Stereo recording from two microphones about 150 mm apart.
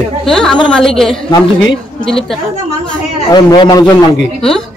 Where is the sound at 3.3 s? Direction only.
30° left (ahead or behind).